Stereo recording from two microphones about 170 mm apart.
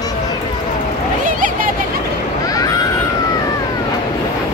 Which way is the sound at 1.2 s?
50° right (ahead or behind).